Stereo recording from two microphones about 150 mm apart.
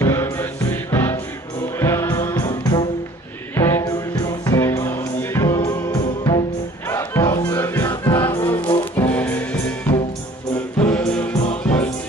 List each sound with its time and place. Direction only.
0.0 s music: 15° left (ahead or behind)
8.1 s music: 35° left (ahead or behind)
8.4 s music: 15° left (ahead or behind)
10.8 s music: 5° left (ahead or behind)